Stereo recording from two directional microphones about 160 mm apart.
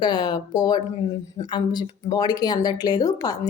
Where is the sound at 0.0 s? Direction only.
25° left (ahead or behind).